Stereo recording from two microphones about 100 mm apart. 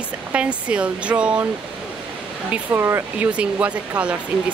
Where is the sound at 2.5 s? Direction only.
25° right (ahead or behind).